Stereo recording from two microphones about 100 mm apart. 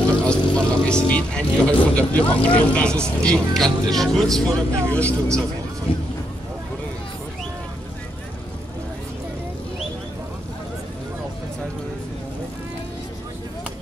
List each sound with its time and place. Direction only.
0.3 s speech: 10° left (ahead or behind)
4.5 s speech: 30° right (ahead or behind)
4.9 s speech: 15° left (ahead or behind)
5.9 s speech: 70° left (ahead or behind)